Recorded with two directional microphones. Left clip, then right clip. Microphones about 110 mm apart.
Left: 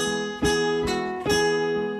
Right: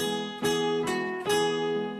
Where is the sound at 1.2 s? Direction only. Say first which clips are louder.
Left 4 dB; 25° left (ahead or behind).